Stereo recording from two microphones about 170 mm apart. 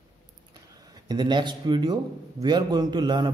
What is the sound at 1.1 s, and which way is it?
A man's voice, 25° right (ahead or behind).